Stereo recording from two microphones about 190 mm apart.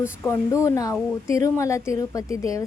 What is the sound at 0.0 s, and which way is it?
A woman's voice, 15° left (ahead or behind).